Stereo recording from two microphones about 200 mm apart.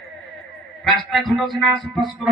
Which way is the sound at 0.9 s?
Centre (ahead or behind).